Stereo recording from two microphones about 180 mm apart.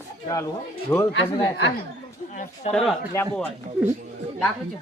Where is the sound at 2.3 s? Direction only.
40° left (ahead or behind).